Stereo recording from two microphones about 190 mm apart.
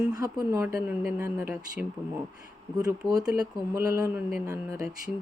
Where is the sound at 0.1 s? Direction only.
20° right (ahead or behind).